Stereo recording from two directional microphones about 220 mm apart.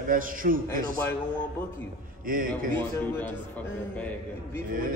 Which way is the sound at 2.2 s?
40° right (ahead or behind).